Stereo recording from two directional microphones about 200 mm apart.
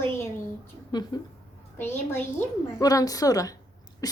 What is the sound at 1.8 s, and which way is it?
A woman's voice, 10° left (ahead or behind).